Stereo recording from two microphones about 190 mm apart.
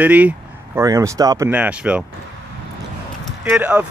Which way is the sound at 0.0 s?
10° right (ahead or behind).